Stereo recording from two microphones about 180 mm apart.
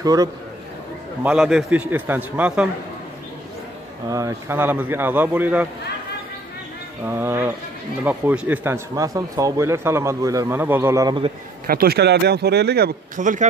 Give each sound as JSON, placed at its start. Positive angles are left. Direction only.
{"t": 0.0, "sound": "a man's voice", "side_deg": -20}
{"t": 1.2, "sound": "speech", "side_deg": 0}
{"t": 4.1, "sound": "speech", "side_deg": -15}
{"t": 7.1, "sound": "speech", "side_deg": -10}
{"t": 11.6, "sound": "speech", "side_deg": -55}
{"t": 13.2, "sound": "speech", "side_deg": -45}